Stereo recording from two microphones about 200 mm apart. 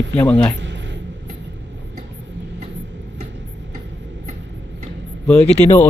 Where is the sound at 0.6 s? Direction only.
60° right (ahead or behind).